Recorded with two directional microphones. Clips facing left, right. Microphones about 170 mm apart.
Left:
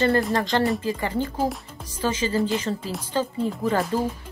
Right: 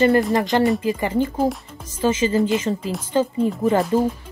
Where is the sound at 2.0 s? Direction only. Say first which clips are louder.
Right 5 dB; 20° right (ahead or behind).